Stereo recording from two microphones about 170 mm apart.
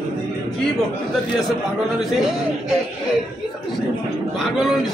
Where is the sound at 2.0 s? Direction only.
Centre (ahead or behind).